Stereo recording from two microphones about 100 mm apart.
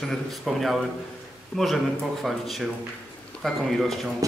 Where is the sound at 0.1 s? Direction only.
Centre (ahead or behind).